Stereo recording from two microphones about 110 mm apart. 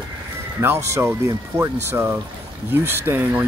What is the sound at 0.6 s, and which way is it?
Speech, 20° right (ahead or behind).